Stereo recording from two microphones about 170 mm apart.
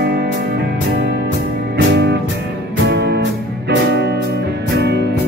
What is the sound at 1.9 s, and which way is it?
Music, 90° right.